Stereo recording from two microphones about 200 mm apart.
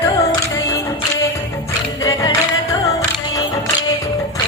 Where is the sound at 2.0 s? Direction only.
15° left (ahead or behind).